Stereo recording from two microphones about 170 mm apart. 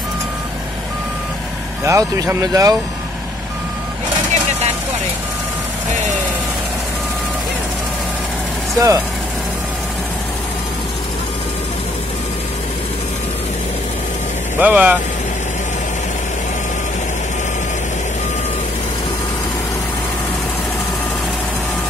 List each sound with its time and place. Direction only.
1.9 s speech: 20° right (ahead or behind)
8.7 s speech: 20° right (ahead or behind)
14.6 s speech: 10° right (ahead or behind)